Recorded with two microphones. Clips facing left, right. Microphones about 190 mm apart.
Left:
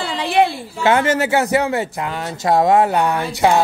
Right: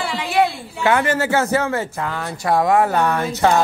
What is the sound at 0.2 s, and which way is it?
Speech, 30° left (ahead or behind).